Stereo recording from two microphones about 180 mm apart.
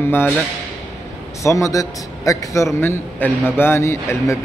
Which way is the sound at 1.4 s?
15° left (ahead or behind).